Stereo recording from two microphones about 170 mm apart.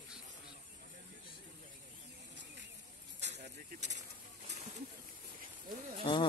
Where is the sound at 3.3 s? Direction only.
45° right (ahead or behind).